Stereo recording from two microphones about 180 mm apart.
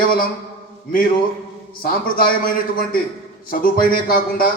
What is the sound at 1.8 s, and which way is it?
A man's voice, 55° left (ahead or behind).